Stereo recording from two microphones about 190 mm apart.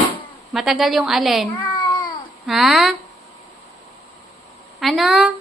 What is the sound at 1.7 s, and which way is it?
Cat, 25° left (ahead or behind).